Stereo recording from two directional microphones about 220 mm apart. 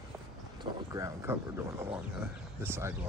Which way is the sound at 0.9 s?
10° right (ahead or behind).